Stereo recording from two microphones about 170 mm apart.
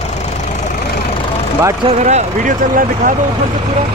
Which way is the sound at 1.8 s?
40° right (ahead or behind).